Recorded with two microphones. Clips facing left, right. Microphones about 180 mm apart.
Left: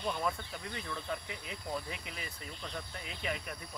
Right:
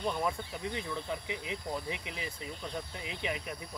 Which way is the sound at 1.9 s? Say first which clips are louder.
Right 5 dB; 75° right (ahead or behind).